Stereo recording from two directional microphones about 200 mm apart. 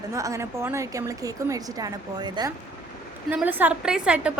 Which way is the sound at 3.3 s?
10° right (ahead or behind).